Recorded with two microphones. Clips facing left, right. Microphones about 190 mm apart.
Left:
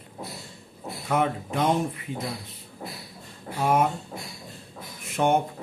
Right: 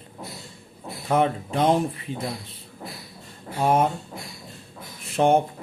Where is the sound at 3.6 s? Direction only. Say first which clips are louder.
Right 2 dB; 30° right (ahead or behind).